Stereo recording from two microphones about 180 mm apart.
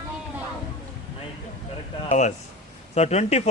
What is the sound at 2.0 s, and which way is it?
Speech, 40° left (ahead or behind).